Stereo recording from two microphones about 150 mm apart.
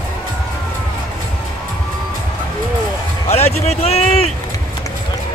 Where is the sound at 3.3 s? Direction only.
45° left (ahead or behind).